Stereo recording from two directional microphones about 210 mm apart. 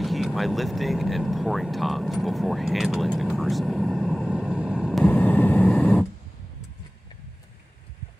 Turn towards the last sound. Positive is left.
turn(degrees=20)  # may be behind; listen again after turning